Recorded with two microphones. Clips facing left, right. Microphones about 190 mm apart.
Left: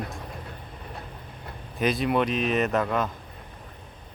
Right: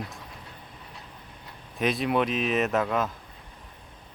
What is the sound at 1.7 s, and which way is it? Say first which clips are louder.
Speech: left 1 dB; centre (ahead or behind).